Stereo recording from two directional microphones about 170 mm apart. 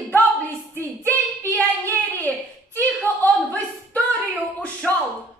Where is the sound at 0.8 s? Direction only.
10° left (ahead or behind).